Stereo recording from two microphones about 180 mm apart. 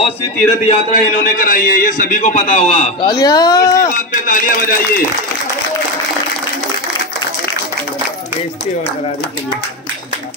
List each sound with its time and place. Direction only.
0.7 s a man's voice: 50° left (ahead or behind)
3.0 s speech: 20° left (ahead or behind)
3.9 s a man's voice: 45° left (ahead or behind)